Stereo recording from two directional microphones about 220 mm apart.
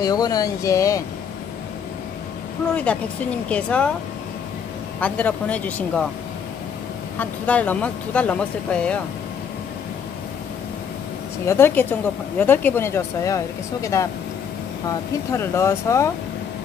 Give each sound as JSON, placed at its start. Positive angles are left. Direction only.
{"t": 0.0, "sound": "speech", "side_deg": 15}
{"t": 2.7, "sound": "speech", "side_deg": 5}
{"t": 5.0, "sound": "speech", "side_deg": 5}
{"t": 7.2, "sound": "speech", "side_deg": 5}
{"t": 11.4, "sound": "speech", "side_deg": 10}